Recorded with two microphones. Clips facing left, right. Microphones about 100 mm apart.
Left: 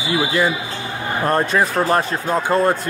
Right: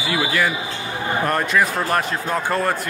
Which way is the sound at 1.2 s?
30° left (ahead or behind).